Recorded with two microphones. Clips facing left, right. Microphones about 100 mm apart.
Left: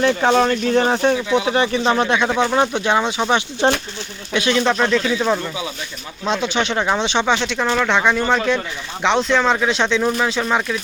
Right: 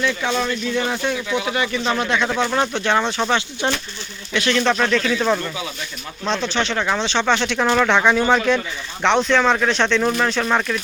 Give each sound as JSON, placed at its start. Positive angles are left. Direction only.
{"t": 0.0, "sound": "speech", "side_deg": 40}
{"t": 3.6, "sound": "speech", "side_deg": 35}
{"t": 4.3, "sound": "speech", "side_deg": 15}
{"t": 4.7, "sound": "speech", "side_deg": 5}
{"t": 7.3, "sound": "speech", "side_deg": 0}